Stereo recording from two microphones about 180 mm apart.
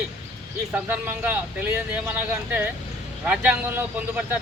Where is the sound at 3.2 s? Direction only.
5° right (ahead or behind).